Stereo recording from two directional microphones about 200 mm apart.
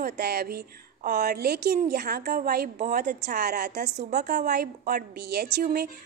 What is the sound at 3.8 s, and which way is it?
Speech, 35° right (ahead or behind).